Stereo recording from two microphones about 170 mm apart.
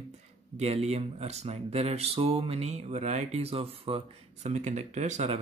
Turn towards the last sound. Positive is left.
turn(degrees=-40)  # may be behind; listen again after turning